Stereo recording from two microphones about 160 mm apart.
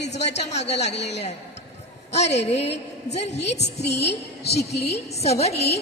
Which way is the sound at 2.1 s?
45° left (ahead or behind).